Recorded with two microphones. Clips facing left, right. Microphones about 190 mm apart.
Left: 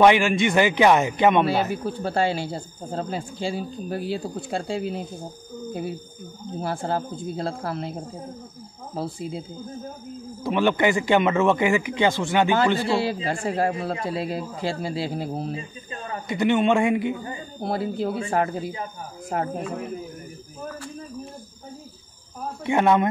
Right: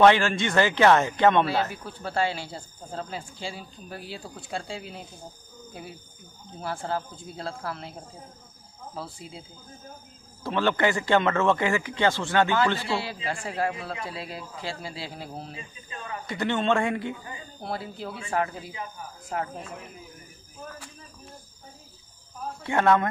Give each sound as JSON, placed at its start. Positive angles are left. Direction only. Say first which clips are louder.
{"t": 0.0, "sound": "speech", "louder": "left 2 dB", "side_deg": 15}
{"t": 1.9, "sound": "a man's voice", "louder": "left 5 dB", "side_deg": 40}
{"t": 6.6, "sound": "a man's voice", "louder": "left 4 dB", "side_deg": 35}
{"t": 10.4, "sound": "speech", "louder": "left 4 dB", "side_deg": 15}
{"t": 12.7, "sound": "a man's voice", "louder": "left 7 dB", "side_deg": 45}
{"t": 16.3, "sound": "speech", "louder": "left 5 dB", "side_deg": 15}
{"t": 17.6, "sound": "a man's voice", "louder": "left 9 dB", "side_deg": 40}
{"t": 19.5, "sound": "speech", "louder": "left 10 dB", "side_deg": 55}
{"t": 22.7, "sound": "speech", "louder": "left 3 dB", "side_deg": 15}